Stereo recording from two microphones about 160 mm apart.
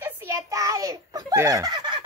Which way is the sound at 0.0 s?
20° right (ahead or behind).